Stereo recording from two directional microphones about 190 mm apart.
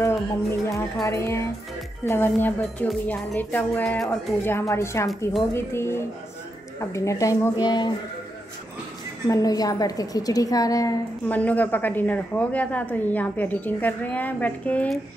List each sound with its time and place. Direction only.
0.0 s a woman's voice: 15° left (ahead or behind)
9.3 s a woman's voice: 20° left (ahead or behind)